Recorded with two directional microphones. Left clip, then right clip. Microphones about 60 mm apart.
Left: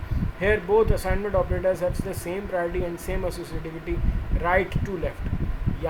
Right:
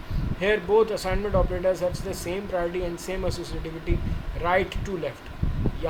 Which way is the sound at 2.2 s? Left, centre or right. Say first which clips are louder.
Even; centre.